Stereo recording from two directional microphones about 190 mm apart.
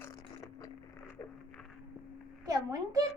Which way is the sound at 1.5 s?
5° left (ahead or behind).